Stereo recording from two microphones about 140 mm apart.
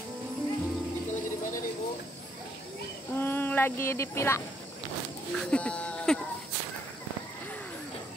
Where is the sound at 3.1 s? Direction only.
15° left (ahead or behind).